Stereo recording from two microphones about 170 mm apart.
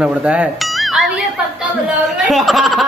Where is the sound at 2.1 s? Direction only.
Centre (ahead or behind).